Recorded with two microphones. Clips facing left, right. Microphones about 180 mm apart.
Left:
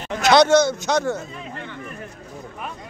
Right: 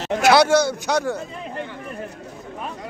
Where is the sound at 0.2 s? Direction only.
10° right (ahead or behind).